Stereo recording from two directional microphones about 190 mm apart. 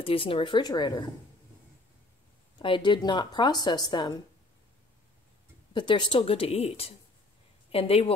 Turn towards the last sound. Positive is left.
turn(degrees=30)  # may be behind; listen again after turning